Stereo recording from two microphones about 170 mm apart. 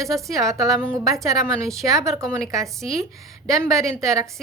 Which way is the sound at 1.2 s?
20° right (ahead or behind).